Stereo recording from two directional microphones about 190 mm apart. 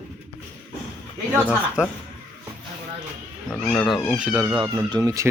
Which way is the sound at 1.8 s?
5° right (ahead or behind).